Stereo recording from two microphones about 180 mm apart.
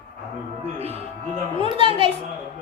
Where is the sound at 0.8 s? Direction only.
35° right (ahead or behind).